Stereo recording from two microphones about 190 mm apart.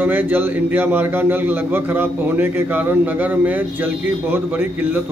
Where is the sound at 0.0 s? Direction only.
10° right (ahead or behind).